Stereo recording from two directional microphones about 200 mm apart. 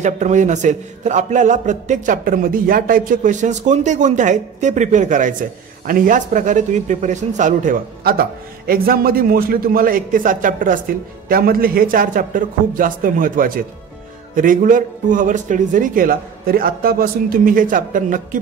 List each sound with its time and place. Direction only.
0.0 s a man's voice: 35° right (ahead or behind)